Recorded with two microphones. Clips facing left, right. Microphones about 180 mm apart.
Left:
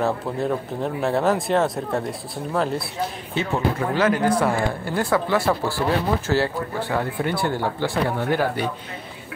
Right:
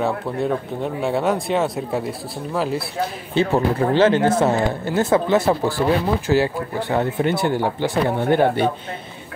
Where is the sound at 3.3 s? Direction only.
30° right (ahead or behind).